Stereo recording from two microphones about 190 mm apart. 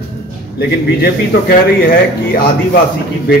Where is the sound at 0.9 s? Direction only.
55° left (ahead or behind).